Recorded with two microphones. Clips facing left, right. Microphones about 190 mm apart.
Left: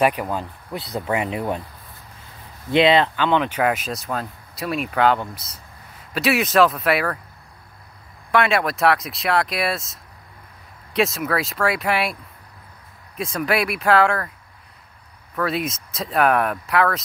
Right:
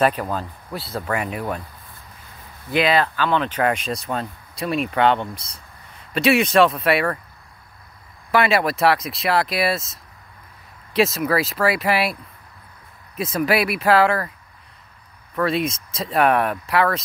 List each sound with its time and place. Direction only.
0.0 s speech: 15° left (ahead or behind)
2.7 s speech: 25° left (ahead or behind); by 7.2 s centre (ahead or behind)
8.3 s speech: 5° right (ahead or behind)
15.3 s speech: centre (ahead or behind)